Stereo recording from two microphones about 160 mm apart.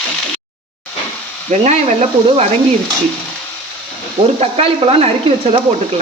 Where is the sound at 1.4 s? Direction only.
45° right (ahead or behind).